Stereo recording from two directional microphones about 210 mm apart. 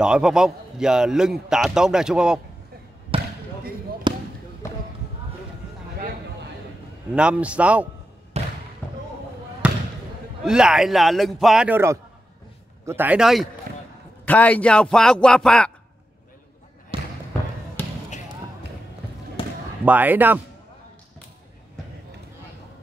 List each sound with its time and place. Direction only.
0.0 s a man's voice: 5° right (ahead or behind)
3.1 s basketball bounce: 25° right (ahead or behind)
7.2 s a man's voice: 5° right (ahead or behind)
8.3 s basketball bounce: 30° right (ahead or behind)
8.8 s basketball bounce: 10° left (ahead or behind)
9.6 s basketball bounce: 5° right (ahead or behind)
10.4 s a man's voice: 5° right (ahead or behind)
16.9 s trickle: 25° right (ahead or behind)
19.8 s a man's voice: 10° right (ahead or behind)